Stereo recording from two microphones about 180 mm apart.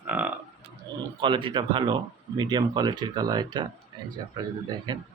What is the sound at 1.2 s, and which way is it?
Speech, 25° right (ahead or behind).